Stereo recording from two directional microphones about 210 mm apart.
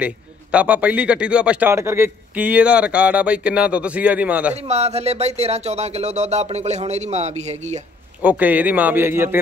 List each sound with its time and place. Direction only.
0.0 s a man's voice: 5° right (ahead or behind)
4.6 s speech: 30° right (ahead or behind)
8.2 s a man's voice: 5° right (ahead or behind)